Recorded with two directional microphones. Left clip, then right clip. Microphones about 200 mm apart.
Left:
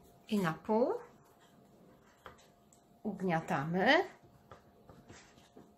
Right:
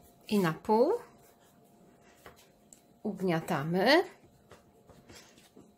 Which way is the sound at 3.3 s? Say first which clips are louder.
Right 2 dB; 45° right (ahead or behind).